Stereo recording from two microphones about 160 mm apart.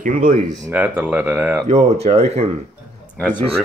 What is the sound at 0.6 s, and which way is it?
Speech, 10° right (ahead or behind).